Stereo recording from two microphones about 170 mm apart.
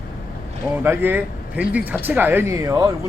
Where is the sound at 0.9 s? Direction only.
10° right (ahead or behind).